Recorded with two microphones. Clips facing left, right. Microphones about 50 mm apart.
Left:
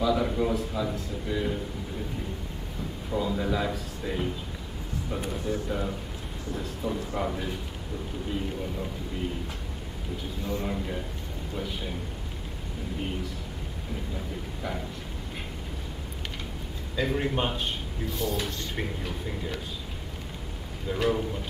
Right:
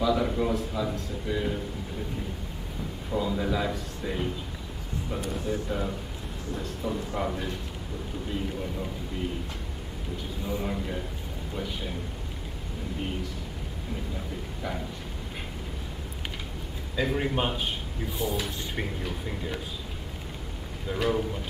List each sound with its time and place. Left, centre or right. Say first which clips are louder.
0.0 s a man's voice: even; centre
3.1 s a man's voice: even; centre
5.7 s a man's voice: even; centre
10.4 s a man's voice: even; centre
16.9 s a man's voice: even; centre
18.1 s speech: even; centre
18.8 s a man's voice: right 1 dB; centre
20.9 s a man's voice: even; centre